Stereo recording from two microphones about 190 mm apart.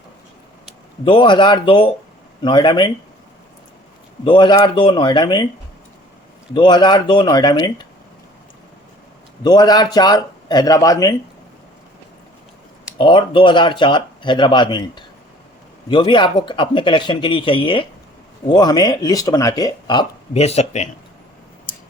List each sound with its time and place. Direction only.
1.0 s speech: 25° left (ahead or behind)
4.2 s speech: 25° left (ahead or behind)
6.5 s speech: 25° left (ahead or behind)
9.4 s speech: 20° left (ahead or behind)
13.0 s speech: 25° left (ahead or behind)